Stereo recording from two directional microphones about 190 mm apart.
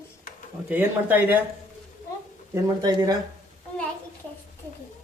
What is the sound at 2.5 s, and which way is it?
Speech, 20° right (ahead or behind).